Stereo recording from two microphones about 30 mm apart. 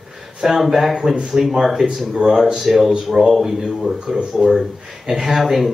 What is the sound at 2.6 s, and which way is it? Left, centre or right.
Speech, centre.